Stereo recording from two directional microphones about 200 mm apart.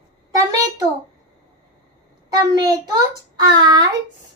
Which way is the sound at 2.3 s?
20° right (ahead or behind).